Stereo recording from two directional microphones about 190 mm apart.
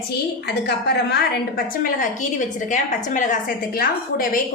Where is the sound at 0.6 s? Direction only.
60° left (ahead or behind).